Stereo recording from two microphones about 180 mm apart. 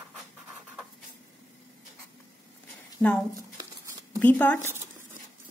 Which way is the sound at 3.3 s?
20° right (ahead or behind).